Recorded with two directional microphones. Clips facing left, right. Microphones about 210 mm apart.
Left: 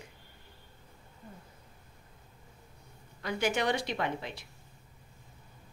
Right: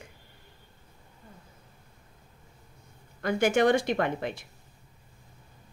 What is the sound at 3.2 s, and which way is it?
Speech, 50° right (ahead or behind).